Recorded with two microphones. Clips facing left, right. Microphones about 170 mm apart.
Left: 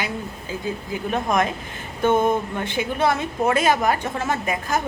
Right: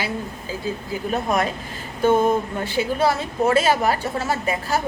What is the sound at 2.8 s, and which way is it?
A woman's voice, 30° right (ahead or behind).